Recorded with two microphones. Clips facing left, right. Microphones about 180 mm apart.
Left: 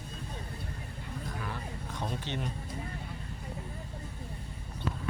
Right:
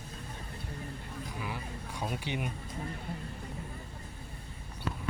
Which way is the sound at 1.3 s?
10° right (ahead or behind).